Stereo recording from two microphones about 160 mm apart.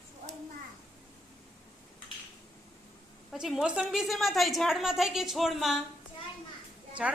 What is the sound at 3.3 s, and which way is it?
A woman's voice, 5° right (ahead or behind).